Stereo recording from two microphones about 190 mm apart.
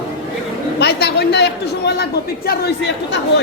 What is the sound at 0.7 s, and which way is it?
A woman's voice, 60° left (ahead or behind).